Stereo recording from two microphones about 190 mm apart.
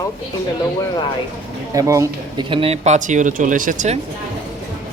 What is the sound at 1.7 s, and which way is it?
Speech, 15° right (ahead or behind).